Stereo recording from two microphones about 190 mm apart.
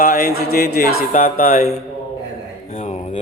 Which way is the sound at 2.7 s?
35° left (ahead or behind).